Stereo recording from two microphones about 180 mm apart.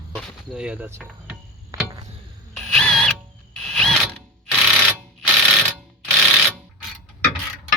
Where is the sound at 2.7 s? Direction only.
5° left (ahead or behind).